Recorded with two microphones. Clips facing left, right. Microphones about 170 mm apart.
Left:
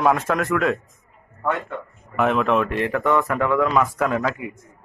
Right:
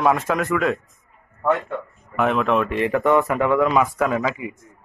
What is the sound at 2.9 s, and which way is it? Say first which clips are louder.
Speech: right 3 dB; 20° right (ahead or behind).